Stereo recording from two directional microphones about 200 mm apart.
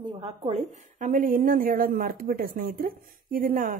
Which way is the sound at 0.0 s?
30° right (ahead or behind).